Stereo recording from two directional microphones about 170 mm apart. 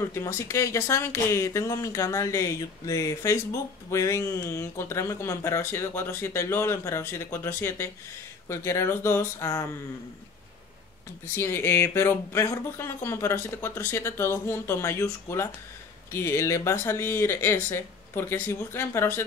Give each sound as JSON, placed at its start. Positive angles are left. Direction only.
{"t": 0.1, "sound": "speech", "side_deg": 20}
{"t": 11.3, "sound": "speech", "side_deg": 15}